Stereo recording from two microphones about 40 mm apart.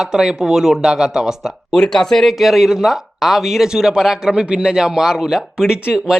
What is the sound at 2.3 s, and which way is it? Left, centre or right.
A man's voice, centre.